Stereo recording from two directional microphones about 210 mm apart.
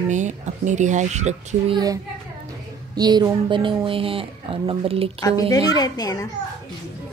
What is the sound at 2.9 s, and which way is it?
A woman's voice, 20° right (ahead or behind).